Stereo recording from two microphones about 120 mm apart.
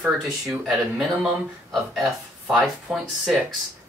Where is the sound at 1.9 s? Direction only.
5° right (ahead or behind).